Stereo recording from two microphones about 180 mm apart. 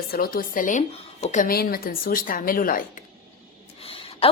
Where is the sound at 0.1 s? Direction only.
55° left (ahead or behind).